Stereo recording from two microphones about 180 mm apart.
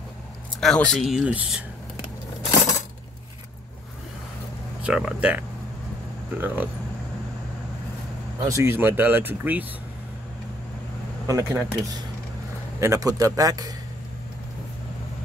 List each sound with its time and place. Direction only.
0.6 s speech: 5° left (ahead or behind)
4.8 s speech: 5° right (ahead or behind)
8.5 s speech: 15° right (ahead or behind)
11.2 s speech: 15° right (ahead or behind)